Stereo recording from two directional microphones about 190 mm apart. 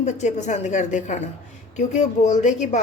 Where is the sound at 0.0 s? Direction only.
40° left (ahead or behind).